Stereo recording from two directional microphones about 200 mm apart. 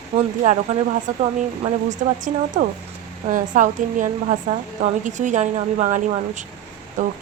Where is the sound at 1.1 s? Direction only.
35° right (ahead or behind).